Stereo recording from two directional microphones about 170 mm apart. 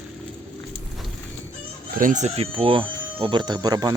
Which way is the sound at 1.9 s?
50° right (ahead or behind).